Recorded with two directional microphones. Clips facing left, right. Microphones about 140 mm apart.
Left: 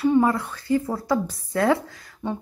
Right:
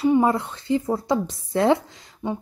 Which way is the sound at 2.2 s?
15° right (ahead or behind).